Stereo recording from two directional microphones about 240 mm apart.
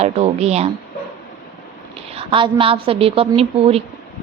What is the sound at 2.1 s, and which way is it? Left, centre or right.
A woman's voice, right.